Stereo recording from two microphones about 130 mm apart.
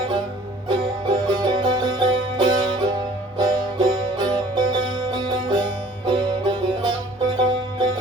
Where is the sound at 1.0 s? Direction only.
35° right (ahead or behind).